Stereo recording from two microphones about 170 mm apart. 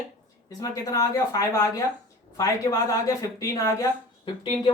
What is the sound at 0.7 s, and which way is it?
A woman's voice, 20° left (ahead or behind).